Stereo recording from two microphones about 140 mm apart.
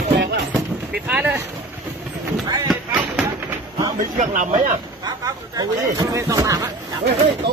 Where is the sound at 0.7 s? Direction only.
5° right (ahead or behind).